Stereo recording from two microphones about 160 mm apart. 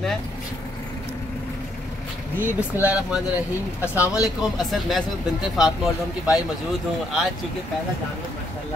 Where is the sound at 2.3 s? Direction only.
10° right (ahead or behind).